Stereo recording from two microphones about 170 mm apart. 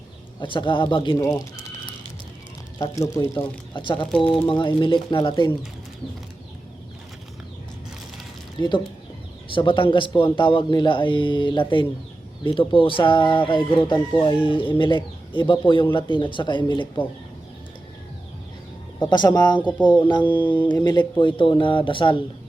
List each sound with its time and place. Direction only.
0.3 s speech: 30° left (ahead or behind)
1.1 s speech: 15° left (ahead or behind)
2.7 s speech: 20° left (ahead or behind)
3.7 s speech: 30° left (ahead or behind)
8.5 s a man's voice: 25° left (ahead or behind)
18.9 s speech: 25° left (ahead or behind)